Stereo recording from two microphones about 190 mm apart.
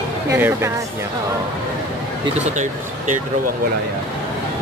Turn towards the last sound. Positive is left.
turn(degrees=-40)  # may be behind; listen again after turning